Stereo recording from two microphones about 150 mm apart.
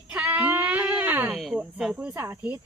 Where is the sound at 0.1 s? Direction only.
10° right (ahead or behind).